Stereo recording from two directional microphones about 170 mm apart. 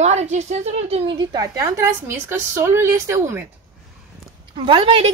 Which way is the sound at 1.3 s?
20° right (ahead or behind).